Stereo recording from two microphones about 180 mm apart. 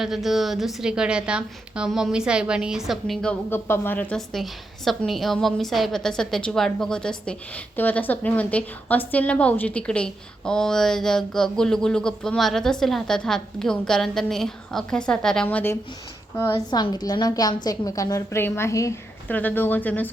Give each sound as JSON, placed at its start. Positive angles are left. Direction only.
{"t": 0.0, "sound": "a woman's voice", "side_deg": 0}